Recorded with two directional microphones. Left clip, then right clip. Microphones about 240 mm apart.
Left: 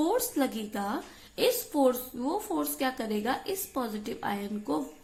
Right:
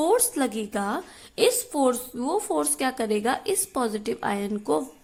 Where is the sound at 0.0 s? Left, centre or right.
Right.